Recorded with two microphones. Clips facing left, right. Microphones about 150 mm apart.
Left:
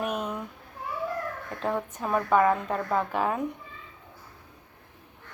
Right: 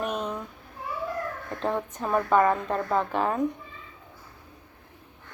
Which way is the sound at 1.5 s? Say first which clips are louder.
Right 1 dB; 5° left (ahead or behind).